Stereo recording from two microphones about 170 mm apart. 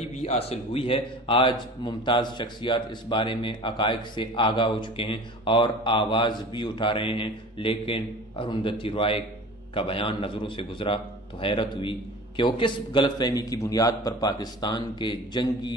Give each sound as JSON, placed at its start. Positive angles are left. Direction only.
{"t": 0.2, "sound": "a man's voice", "side_deg": 35}